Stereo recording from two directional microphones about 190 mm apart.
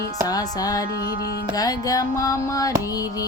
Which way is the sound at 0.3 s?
20° left (ahead or behind).